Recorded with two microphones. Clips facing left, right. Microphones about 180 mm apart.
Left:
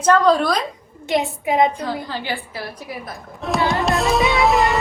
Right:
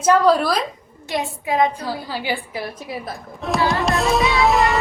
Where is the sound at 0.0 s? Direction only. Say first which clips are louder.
Even; 10° right (ahead or behind).